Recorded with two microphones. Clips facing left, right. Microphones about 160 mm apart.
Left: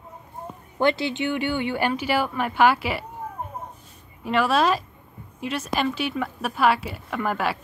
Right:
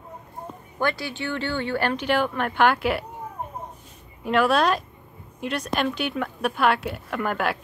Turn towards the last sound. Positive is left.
turn(degrees=0)  # may be behind; listen again after turning